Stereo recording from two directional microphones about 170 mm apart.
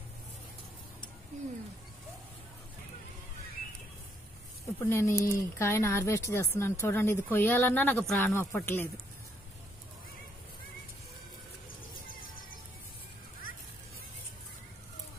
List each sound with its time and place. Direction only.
4.7 s speech: 15° left (ahead or behind)
12.1 s music: 55° left (ahead or behind)